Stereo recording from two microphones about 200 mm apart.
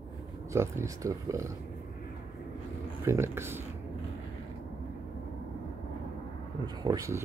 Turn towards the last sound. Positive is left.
turn(degrees=-20)  # may be behind; listen again after turning